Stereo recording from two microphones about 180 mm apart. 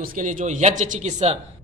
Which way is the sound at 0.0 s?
45° right (ahead or behind).